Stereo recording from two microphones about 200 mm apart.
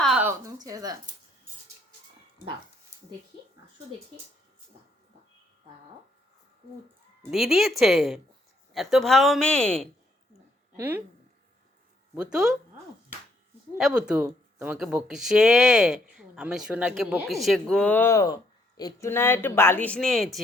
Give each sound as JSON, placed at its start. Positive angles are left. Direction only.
{"t": 0.0, "sound": "a sound", "side_deg": -5}
{"t": 7.2, "sound": "speech", "side_deg": 0}
{"t": 10.8, "sound": "speech", "side_deg": -10}
{"t": 12.1, "sound": "speech", "side_deg": -5}
{"t": 13.7, "sound": "speech", "side_deg": -5}